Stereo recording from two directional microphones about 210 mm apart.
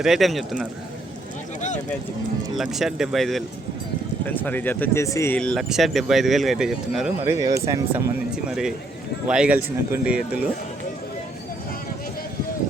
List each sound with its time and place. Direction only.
0.0 s speech: centre (ahead or behind)
2.6 s speech: centre (ahead or behind)
7.3 s speech: 15° right (ahead or behind)
8.4 s speech: centre (ahead or behind)